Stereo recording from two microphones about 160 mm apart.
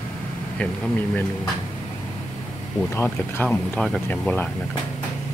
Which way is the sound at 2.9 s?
15° left (ahead or behind).